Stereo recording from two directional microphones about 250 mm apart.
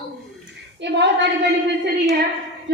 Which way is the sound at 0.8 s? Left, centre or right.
Right.